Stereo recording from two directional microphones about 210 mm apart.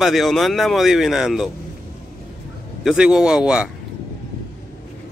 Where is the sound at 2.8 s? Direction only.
5° right (ahead or behind).